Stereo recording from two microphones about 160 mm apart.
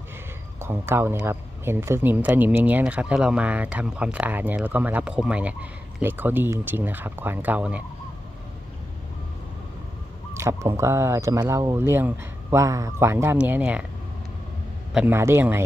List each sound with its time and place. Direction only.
0.6 s a man's voice: 15° right (ahead or behind)
10.3 s a man's voice: 15° right (ahead or behind)
15.0 s a man's voice: 15° right (ahead or behind)